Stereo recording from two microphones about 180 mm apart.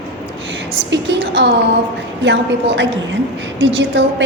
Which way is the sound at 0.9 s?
75° right (ahead or behind).